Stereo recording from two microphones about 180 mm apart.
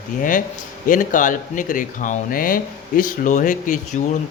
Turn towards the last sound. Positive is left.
turn(degrees=45)  # may be behind; listen again after turning